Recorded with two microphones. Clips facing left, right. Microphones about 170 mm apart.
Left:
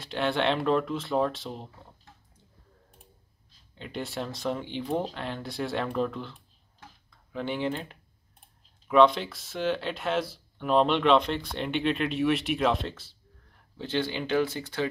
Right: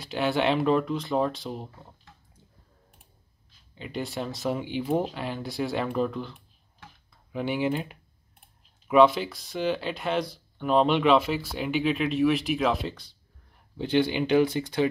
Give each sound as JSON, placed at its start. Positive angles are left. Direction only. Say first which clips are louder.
{"t": 0.0, "sound": "speech", "louder": "right 2 dB", "side_deg": -5}
{"t": 3.7, "sound": "speech", "louder": "right 2 dB", "side_deg": 0}
{"t": 13.7, "sound": "speech", "louder": "right 6 dB", "side_deg": -15}